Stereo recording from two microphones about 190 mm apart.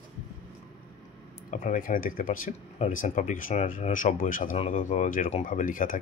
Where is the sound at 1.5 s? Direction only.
40° left (ahead or behind).